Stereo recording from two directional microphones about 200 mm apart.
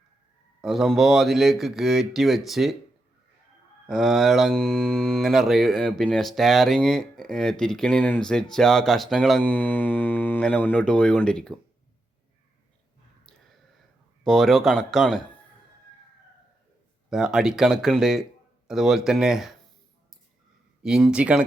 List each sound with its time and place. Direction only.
0.6 s speech: centre (ahead or behind)
3.8 s speech: centre (ahead or behind)
14.3 s speech: centre (ahead or behind)
17.1 s speech: 5° right (ahead or behind)
20.8 s speech: 5° right (ahead or behind)